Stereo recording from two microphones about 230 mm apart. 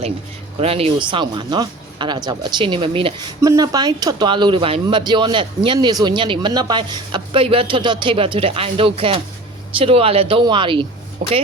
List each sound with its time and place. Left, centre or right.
0.6 s speech: right